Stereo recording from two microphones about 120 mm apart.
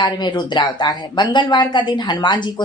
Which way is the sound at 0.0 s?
40° left (ahead or behind).